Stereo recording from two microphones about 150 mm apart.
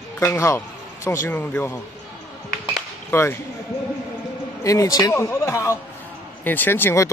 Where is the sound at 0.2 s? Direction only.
20° left (ahead or behind).